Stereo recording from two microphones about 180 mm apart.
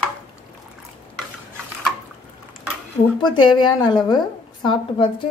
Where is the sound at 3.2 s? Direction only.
25° left (ahead or behind).